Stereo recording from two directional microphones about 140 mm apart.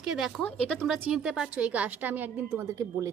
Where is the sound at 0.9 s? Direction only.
5° right (ahead or behind).